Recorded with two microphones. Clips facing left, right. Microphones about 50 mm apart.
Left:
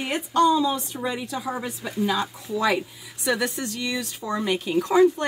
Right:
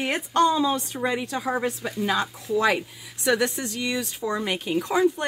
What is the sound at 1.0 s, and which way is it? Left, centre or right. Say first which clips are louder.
Speech: right 3 dB; right.